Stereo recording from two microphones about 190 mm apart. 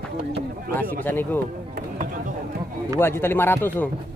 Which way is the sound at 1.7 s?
45° right (ahead or behind).